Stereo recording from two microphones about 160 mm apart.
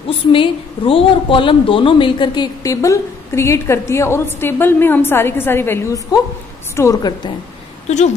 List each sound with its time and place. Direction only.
0.3 s a woman's voice: 35° left (ahead or behind)